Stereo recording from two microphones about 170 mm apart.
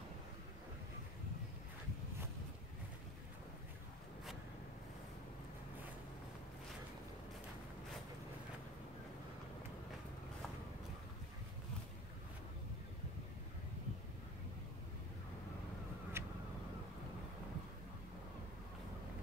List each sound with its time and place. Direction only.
16.2 s vehicle: 15° right (ahead or behind)